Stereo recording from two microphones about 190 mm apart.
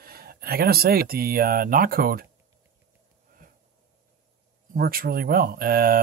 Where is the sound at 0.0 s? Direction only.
55° right (ahead or behind).